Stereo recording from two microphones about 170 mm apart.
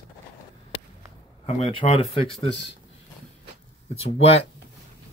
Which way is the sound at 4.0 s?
35° left (ahead or behind).